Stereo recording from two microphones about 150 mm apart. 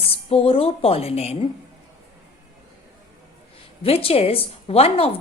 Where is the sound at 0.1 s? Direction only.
40° left (ahead or behind).